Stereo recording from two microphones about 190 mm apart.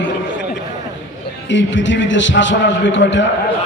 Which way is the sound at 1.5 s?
75° left (ahead or behind).